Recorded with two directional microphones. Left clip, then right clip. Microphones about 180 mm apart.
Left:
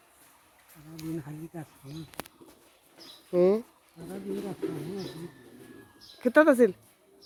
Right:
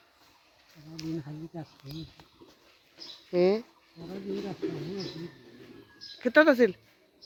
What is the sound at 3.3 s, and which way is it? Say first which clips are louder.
Speech: left 2 dB; 10° left (ahead or behind).